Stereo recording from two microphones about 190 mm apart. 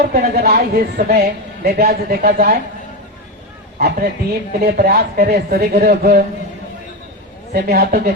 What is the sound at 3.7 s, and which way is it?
A woman's voice, 50° right (ahead or behind).